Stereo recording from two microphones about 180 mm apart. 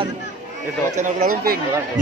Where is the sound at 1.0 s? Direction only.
45° right (ahead or behind).